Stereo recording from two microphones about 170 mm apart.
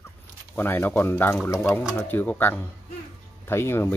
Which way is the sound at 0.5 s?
10° left (ahead or behind).